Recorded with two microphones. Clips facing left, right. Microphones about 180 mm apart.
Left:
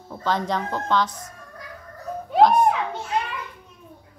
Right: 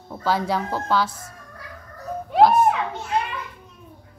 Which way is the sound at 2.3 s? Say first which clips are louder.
Right 1 dB; 5° right (ahead or behind).